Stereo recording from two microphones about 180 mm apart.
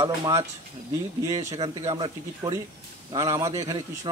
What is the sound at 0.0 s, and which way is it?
Speech, 30° right (ahead or behind).